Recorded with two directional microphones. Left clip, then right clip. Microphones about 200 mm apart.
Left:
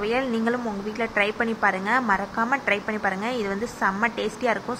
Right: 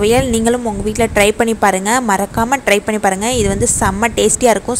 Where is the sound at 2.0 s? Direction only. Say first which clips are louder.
Right 8 dB; 45° right (ahead or behind).